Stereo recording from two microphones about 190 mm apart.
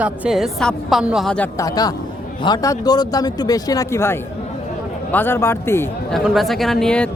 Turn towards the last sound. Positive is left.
turn(degrees=5)  # may be behind; listen again after turning